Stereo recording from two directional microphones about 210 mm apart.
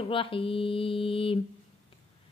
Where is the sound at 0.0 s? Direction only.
25° left (ahead or behind).